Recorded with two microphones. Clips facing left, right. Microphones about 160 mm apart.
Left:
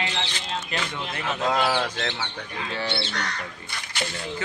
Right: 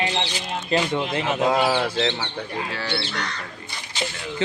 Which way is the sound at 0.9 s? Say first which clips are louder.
Right 8 dB; 25° right (ahead or behind).